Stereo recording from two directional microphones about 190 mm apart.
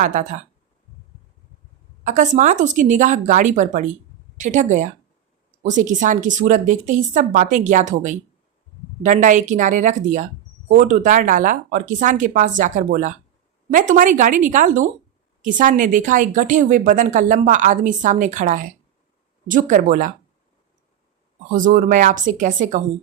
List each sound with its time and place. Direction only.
0.0 s speech: 45° right (ahead or behind)
2.0 s speech: 40° right (ahead or behind)
21.5 s speech: 45° right (ahead or behind)